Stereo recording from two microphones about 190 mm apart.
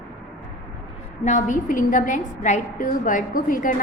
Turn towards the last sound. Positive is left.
turn(degrees=45)  # may be behind; listen again after turning